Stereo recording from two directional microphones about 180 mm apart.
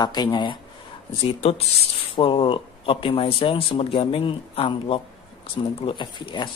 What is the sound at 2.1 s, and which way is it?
Speech, 30° left (ahead or behind).